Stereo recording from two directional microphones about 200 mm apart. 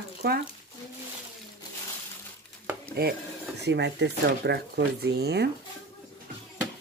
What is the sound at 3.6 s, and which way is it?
Speech, 60° right (ahead or behind).